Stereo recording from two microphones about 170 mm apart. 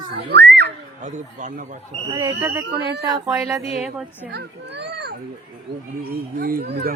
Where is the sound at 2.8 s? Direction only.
90° right.